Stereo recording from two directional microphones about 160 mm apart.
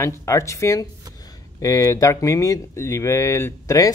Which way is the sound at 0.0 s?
15° left (ahead or behind).